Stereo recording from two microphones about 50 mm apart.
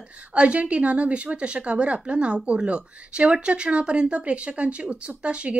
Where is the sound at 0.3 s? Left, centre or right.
Right.